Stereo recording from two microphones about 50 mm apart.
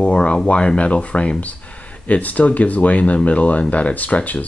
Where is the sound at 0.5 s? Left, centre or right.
Left.